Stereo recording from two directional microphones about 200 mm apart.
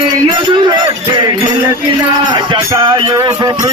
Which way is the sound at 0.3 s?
25° right (ahead or behind).